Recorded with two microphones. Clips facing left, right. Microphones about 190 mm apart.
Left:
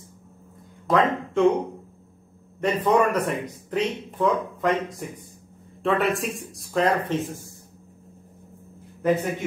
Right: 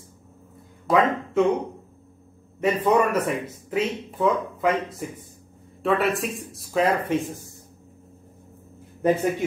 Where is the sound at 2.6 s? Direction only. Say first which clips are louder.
Even; 5° right (ahead or behind).